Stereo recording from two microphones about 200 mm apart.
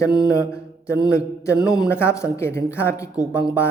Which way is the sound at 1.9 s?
10° left (ahead or behind).